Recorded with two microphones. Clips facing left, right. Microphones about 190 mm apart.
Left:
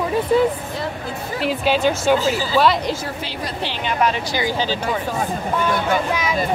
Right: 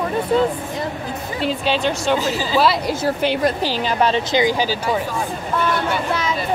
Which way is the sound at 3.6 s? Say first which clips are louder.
Right 2 dB; 35° right (ahead or behind).